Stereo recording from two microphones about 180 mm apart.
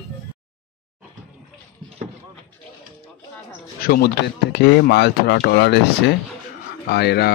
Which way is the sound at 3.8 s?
60° left (ahead or behind).